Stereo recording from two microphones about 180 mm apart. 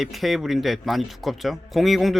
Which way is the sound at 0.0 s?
Centre (ahead or behind).